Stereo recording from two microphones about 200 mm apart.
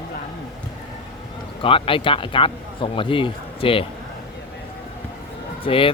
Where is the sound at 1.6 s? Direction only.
25° left (ahead or behind).